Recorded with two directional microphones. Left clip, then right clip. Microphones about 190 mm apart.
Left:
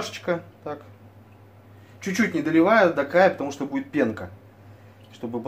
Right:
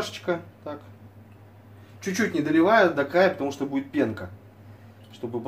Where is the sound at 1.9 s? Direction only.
35° left (ahead or behind).